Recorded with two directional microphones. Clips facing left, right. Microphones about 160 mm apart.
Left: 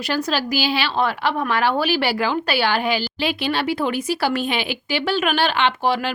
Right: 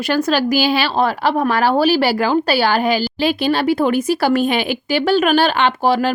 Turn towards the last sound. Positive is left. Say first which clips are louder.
# right 4 dB
turn(degrees=-40)  # may be behind; listen again after turning